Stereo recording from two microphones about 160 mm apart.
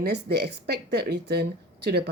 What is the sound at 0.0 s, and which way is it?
Speech, 90° right.